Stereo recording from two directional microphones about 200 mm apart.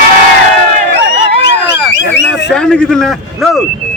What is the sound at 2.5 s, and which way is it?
Speech, 5° left (ahead or behind).